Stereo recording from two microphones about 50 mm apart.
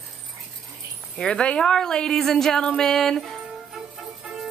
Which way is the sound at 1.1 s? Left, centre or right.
Centre.